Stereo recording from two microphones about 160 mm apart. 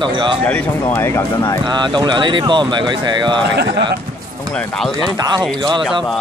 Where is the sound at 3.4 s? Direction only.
90° right.